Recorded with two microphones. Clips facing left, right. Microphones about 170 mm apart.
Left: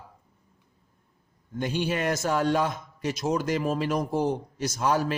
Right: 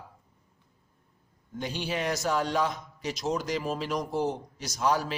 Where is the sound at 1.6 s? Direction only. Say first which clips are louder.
Left 4 dB; 50° left (ahead or behind).